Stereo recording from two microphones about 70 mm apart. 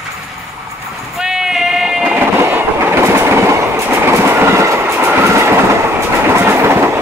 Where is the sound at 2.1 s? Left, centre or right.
Right.